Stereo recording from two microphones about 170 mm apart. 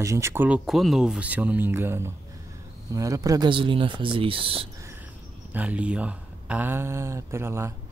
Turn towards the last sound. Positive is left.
turn(degrees=-15)  # may be behind; listen again after turning